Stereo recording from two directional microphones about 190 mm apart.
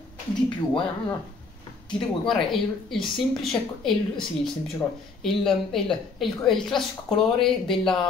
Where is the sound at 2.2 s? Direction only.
Centre (ahead or behind).